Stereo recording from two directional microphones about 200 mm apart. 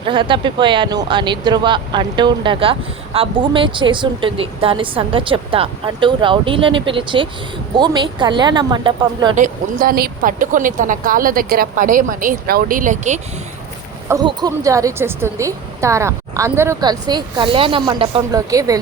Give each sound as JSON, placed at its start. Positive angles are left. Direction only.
{"t": 0.0, "sound": "speech", "side_deg": -25}
{"t": 9.3, "sound": "speech", "side_deg": -40}
{"t": 14.1, "sound": "a woman's voice", "side_deg": -20}